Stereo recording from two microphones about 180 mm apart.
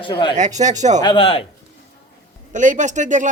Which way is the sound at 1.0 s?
30° left (ahead or behind).